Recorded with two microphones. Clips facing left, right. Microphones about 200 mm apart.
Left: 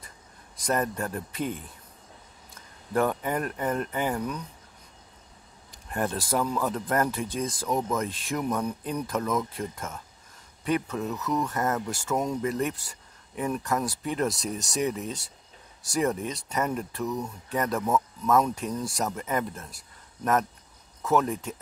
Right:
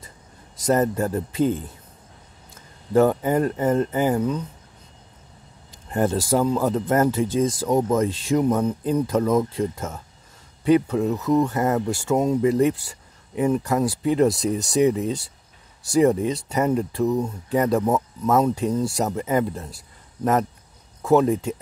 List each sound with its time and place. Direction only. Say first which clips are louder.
0.7 s a man's voice: right 8 dB; 25° right (ahead or behind)
2.9 s a man's voice: right 8 dB; 25° right (ahead or behind)
5.7 s a man's voice: right 7 dB; 30° right (ahead or behind)
21.0 s speech: right 7 dB; 30° right (ahead or behind)